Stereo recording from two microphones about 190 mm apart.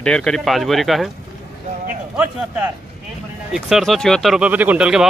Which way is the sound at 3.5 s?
Centre (ahead or behind).